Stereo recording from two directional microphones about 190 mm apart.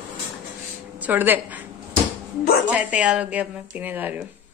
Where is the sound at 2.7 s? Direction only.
5° right (ahead or behind).